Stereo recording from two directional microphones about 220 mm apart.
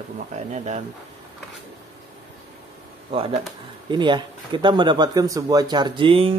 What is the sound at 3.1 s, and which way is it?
Speech, 25° right (ahead or behind).